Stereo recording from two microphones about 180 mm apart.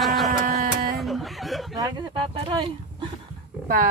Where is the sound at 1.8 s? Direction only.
25° right (ahead or behind).